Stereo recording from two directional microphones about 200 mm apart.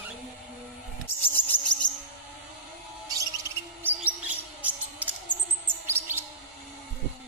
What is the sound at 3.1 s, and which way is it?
Bird, 15° right (ahead or behind).